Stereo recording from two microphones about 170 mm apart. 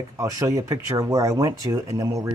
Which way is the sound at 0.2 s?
20° right (ahead or behind).